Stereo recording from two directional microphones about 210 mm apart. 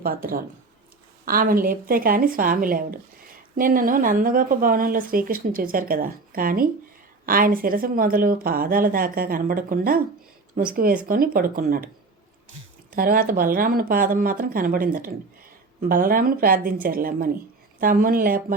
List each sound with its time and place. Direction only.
0.0 s a woman's voice: 45° right (ahead or behind)
13.0 s a woman's voice: 45° right (ahead or behind)